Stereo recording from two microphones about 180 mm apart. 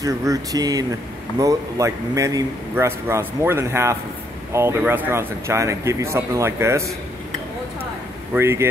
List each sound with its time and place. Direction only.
0.0 s a man's voice: 20° right (ahead or behind)
8.4 s a man's voice: 15° right (ahead or behind)